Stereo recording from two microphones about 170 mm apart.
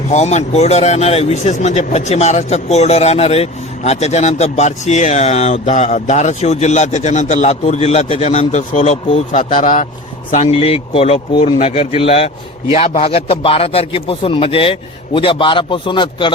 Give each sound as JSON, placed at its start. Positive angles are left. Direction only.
{"t": 0.1, "sound": "speech", "side_deg": 40}